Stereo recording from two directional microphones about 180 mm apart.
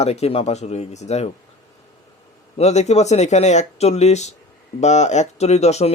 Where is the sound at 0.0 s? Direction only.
35° left (ahead or behind).